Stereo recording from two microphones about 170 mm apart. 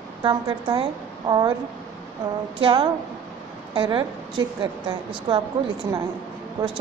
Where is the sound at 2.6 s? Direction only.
30° right (ahead or behind).